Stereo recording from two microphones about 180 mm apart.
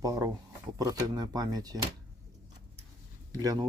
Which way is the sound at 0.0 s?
20° right (ahead or behind).